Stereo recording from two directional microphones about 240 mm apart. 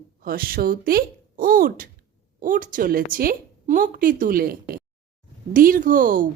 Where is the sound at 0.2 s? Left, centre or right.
Right.